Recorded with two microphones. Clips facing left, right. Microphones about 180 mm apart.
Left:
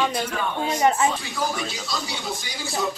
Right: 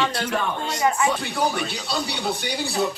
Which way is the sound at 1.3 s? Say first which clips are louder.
Right 3 dB; 65° right (ahead or behind).